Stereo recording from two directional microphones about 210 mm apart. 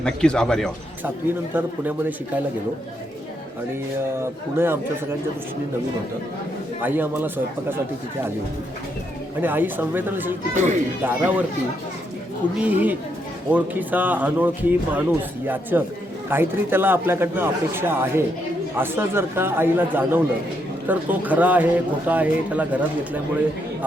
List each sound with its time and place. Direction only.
0.0 s speech: 5° left (ahead or behind)
1.5 s speech: 10° right (ahead or behind)
4.2 s speech: 10° right (ahead or behind)
6.8 s speech: 10° right (ahead or behind)
9.4 s speech: 10° right (ahead or behind)
10.5 s speech: 35° right (ahead or behind)
11.0 s speech: 10° right (ahead or behind)
12.5 s speech: 10° right (ahead or behind)